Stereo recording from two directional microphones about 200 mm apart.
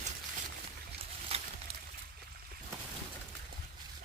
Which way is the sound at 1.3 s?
30° right (ahead or behind).